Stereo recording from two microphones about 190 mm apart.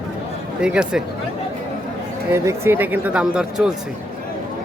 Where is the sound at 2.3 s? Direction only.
15° right (ahead or behind).